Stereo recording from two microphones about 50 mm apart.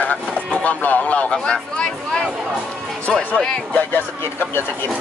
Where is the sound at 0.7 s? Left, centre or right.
Left.